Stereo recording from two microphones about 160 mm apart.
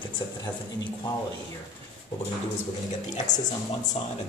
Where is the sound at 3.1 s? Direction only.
50° left (ahead or behind).